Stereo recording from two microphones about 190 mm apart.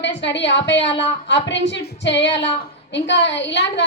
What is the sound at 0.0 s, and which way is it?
A woman's voice, 70° left (ahead or behind).